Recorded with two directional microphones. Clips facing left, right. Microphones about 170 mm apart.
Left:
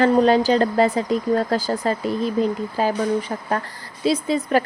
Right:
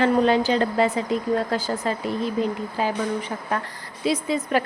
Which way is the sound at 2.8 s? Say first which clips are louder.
Left 4 dB; 35° left (ahead or behind).